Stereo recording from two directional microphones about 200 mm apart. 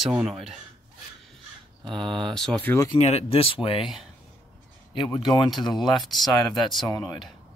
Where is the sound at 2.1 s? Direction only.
5° left (ahead or behind).